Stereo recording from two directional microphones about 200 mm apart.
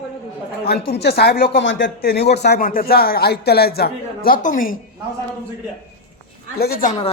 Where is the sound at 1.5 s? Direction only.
65° left (ahead or behind); by 4.8 s 40° left (ahead or behind).